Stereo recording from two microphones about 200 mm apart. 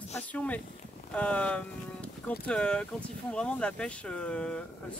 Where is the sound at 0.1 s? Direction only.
5° left (ahead or behind).